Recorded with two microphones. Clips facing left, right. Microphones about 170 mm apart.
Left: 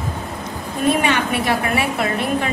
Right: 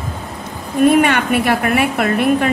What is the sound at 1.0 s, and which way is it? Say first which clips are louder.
A woman's voice: right 5 dB; 60° right (ahead or behind).